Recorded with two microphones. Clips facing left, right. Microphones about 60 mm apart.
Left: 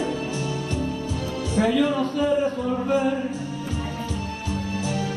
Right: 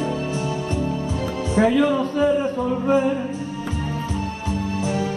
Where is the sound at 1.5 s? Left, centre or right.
Right.